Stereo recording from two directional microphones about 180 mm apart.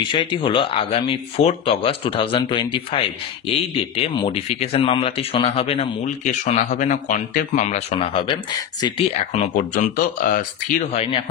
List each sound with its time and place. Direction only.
0.1 s speech: 30° left (ahead or behind)
9.4 s speech: 45° left (ahead or behind)